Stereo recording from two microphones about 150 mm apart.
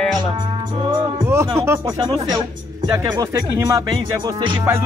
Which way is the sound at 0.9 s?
20° right (ahead or behind).